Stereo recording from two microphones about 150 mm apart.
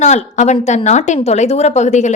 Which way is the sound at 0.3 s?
50° left (ahead or behind).